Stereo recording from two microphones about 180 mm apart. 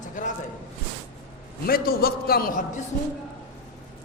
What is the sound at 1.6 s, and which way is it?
A man's voice, 55° left (ahead or behind).